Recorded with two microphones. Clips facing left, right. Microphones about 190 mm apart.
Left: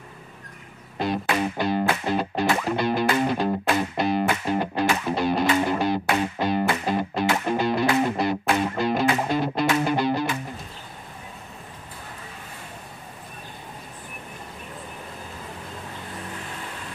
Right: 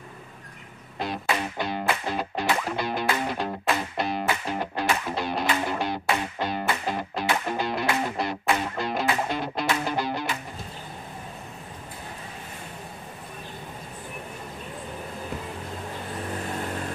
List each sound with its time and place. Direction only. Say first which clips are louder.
0.9 s music: left 4 dB; centre (ahead or behind)
9.8 s music: left 5 dB; 20° left (ahead or behind)